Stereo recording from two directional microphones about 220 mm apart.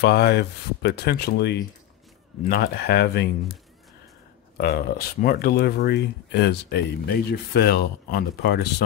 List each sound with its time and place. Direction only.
0.0 s speech: 50° left (ahead or behind)
4.6 s speech: 45° left (ahead or behind)